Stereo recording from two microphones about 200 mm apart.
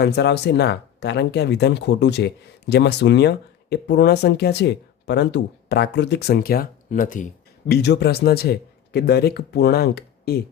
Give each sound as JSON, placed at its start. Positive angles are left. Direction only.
{"t": 0.0, "sound": "speech", "side_deg": 55}
{"t": 7.7, "sound": "speech", "side_deg": 55}